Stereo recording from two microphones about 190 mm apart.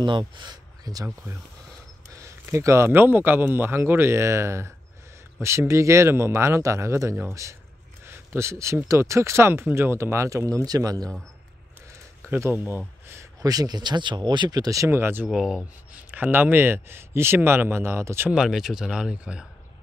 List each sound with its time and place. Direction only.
0.0 s speech: 25° right (ahead or behind)
12.3 s speech: 10° right (ahead or behind)
15.2 s speech: centre (ahead or behind)